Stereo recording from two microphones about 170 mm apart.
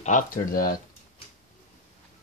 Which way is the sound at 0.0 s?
50° left (ahead or behind).